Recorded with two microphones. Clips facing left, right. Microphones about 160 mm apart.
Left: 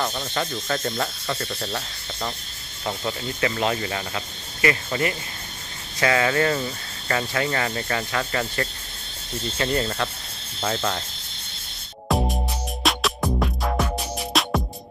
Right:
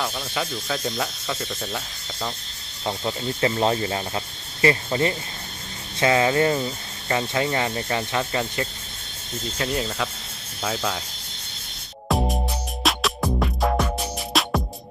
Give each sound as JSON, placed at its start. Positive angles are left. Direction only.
{"t": 0.0, "sound": "speech", "side_deg": 0}
{"t": 2.8, "sound": "speech", "side_deg": -20}
{"t": 9.6, "sound": "speech", "side_deg": -5}
{"t": 12.0, "sound": "music", "side_deg": 0}